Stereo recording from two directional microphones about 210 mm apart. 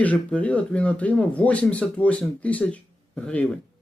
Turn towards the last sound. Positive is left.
turn(degrees=5)  # may be behind; listen again after turning